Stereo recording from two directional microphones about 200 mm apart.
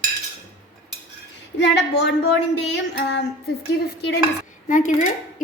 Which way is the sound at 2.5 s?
60° left (ahead or behind).